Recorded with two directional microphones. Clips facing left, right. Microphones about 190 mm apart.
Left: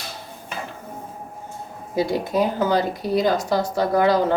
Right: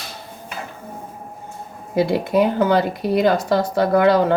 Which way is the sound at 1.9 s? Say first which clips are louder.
Right 4 dB; 60° right (ahead or behind).